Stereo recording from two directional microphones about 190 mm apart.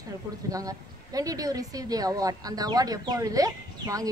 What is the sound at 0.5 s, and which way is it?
Speech, 20° right (ahead or behind).